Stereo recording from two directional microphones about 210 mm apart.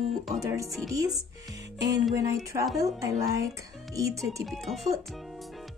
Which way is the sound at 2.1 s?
15° right (ahead or behind).